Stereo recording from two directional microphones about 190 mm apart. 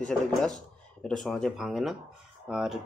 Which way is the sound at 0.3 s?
Centre (ahead or behind).